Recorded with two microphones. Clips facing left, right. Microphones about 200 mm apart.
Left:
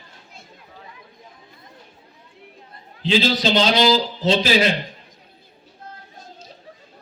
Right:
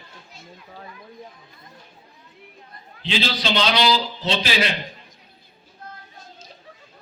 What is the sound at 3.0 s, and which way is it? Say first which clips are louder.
A man's voice: left 6 dB; 40° left (ahead or behind).